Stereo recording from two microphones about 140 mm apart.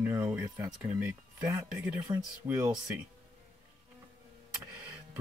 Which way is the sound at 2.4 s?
15° right (ahead or behind).